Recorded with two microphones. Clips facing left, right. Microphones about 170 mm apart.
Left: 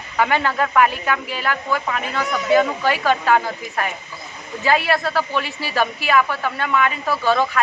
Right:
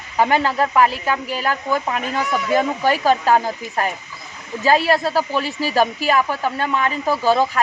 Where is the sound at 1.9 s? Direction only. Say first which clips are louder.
Right 2 dB; 25° right (ahead or behind).